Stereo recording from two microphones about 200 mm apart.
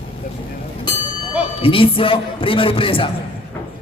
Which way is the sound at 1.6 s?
25° left (ahead or behind).